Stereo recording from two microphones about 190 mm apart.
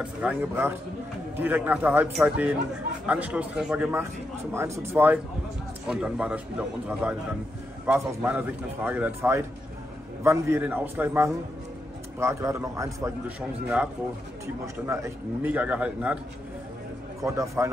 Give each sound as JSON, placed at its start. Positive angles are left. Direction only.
{"t": 0.0, "sound": "a man's voice", "side_deg": -5}
{"t": 14.4, "sound": "a man's voice", "side_deg": -15}
{"t": 17.2, "sound": "a man's voice", "side_deg": -15}